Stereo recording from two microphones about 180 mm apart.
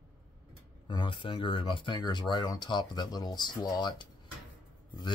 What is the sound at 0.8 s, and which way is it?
Speech, 25° left (ahead or behind).